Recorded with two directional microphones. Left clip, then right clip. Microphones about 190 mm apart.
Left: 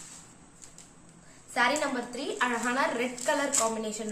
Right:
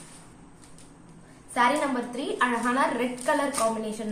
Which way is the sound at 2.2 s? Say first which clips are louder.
Right 4 dB; 5° left (ahead or behind).